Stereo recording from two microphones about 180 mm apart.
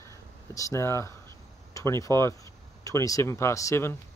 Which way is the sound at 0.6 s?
15° left (ahead or behind).